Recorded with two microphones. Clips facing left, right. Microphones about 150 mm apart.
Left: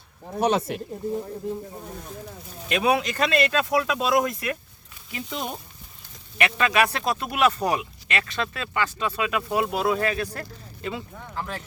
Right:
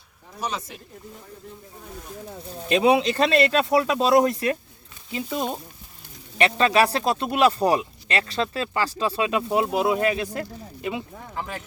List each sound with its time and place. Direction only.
0.3 s speech: 60° left (ahead or behind)
2.6 s speech: 25° right (ahead or behind)
5.1 s speech: 20° right (ahead or behind)
6.3 s speech: 30° right (ahead or behind); by 11.0 s 15° right (ahead or behind)
11.3 s speech: 5° right (ahead or behind)